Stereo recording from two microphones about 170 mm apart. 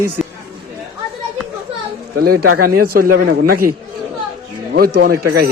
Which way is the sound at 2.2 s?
65° right (ahead or behind).